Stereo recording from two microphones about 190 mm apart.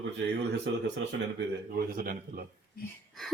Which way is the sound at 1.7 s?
50° right (ahead or behind).